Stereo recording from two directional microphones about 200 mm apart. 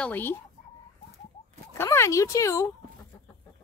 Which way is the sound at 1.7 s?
15° left (ahead or behind).